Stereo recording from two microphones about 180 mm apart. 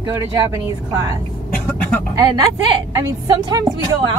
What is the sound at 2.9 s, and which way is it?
Speech, 20° right (ahead or behind).